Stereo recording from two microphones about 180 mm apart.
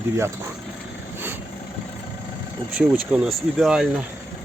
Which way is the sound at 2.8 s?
5° right (ahead or behind).